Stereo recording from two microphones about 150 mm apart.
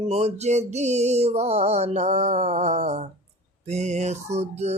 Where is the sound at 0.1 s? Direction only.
45° right (ahead or behind).